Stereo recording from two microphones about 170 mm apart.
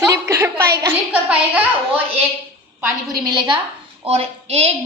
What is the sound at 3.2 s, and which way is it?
Speech, 25° right (ahead or behind).